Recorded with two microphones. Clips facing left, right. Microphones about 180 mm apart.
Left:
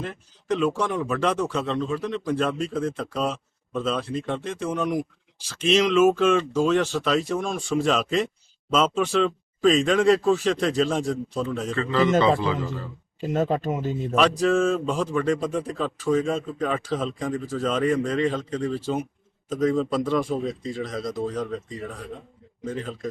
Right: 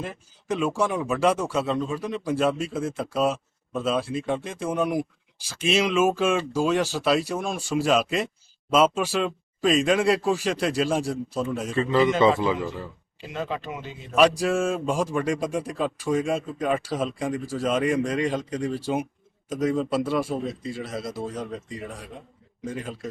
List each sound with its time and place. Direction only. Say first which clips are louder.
0.0 s speech: left 1 dB; 10° right (ahead or behind)
11.8 s speech: right 1 dB; 20° right (ahead or behind)
13.1 s speech: left 7 dB; 45° left (ahead or behind)
14.2 s speech: even; 10° right (ahead or behind)